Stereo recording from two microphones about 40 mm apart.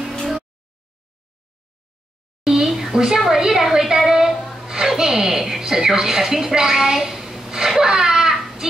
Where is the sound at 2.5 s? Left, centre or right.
Centre.